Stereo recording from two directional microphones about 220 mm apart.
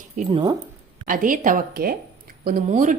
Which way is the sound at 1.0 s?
40° right (ahead or behind).